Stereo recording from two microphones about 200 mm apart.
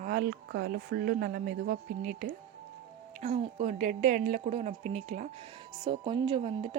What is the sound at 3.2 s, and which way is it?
Speech, 35° right (ahead or behind).